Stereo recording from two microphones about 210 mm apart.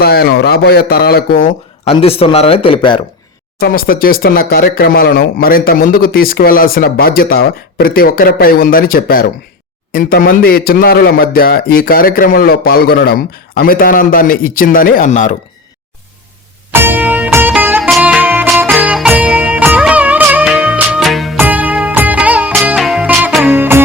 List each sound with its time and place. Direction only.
0.0 s speech: 45° left (ahead or behind)
1.5 s speech: 25° left (ahead or behind)
3.6 s speech: 45° left (ahead or behind)
16.7 s music: 10° right (ahead or behind)